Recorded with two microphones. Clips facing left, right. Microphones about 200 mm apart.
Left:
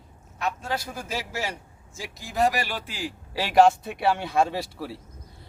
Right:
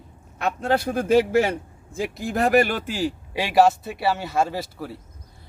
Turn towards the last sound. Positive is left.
turn(degrees=0)  # may be behind; listen again after turning